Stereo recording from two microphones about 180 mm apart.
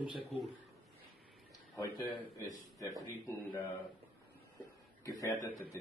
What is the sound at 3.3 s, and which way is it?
Speech, 10° left (ahead or behind).